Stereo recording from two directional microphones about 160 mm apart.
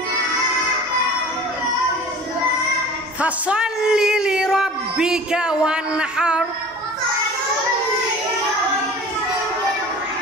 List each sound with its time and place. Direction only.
3.2 s speech: 10° right (ahead or behind)